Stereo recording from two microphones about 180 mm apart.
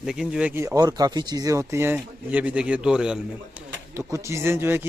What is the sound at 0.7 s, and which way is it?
Speech, 20° right (ahead or behind).